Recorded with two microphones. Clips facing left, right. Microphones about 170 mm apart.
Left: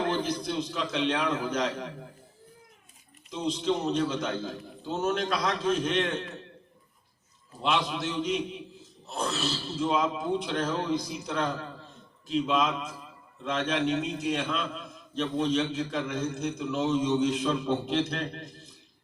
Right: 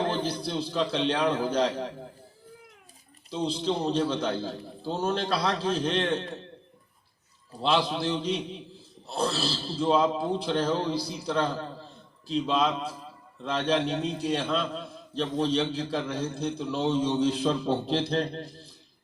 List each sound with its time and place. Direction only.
0.0 s a man's voice: 30° right (ahead or behind)
3.2 s a man's voice: 30° right (ahead or behind)
7.6 s a man's voice: 35° right (ahead or behind)